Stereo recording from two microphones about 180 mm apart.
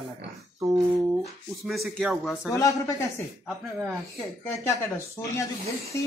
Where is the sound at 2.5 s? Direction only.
20° left (ahead or behind).